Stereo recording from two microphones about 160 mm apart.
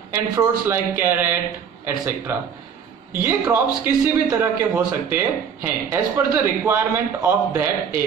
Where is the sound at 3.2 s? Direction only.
15° right (ahead or behind).